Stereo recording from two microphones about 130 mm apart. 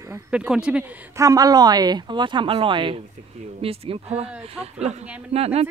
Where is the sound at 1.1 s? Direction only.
25° right (ahead or behind).